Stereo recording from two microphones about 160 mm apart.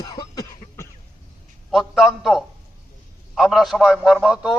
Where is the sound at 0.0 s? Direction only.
25° left (ahead or behind).